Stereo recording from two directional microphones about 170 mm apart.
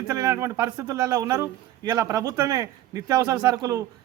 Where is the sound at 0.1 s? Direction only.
20° right (ahead or behind).